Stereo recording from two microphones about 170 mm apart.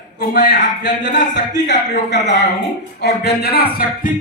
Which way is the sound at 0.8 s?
90° left.